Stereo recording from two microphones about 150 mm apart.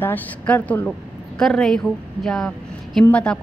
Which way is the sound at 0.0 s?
15° left (ahead or behind).